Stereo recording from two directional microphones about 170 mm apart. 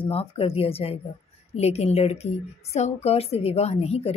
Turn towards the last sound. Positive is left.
turn(degrees=35)  # may be behind; listen again after turning